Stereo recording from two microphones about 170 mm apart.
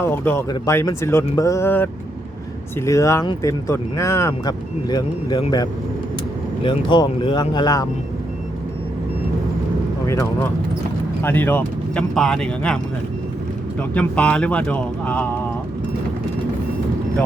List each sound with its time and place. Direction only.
0.0 s speech: 15° left (ahead or behind)
11.2 s speech: 10° left (ahead or behind)